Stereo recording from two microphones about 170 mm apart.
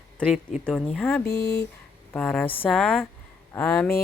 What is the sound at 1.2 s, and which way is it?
Speech, 80° left.